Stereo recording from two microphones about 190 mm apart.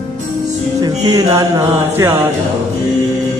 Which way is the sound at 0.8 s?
20° right (ahead or behind).